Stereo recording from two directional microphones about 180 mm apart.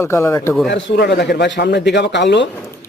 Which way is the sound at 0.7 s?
70° left (ahead or behind).